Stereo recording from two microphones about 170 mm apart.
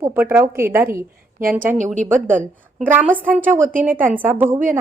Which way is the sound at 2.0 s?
50° right (ahead or behind).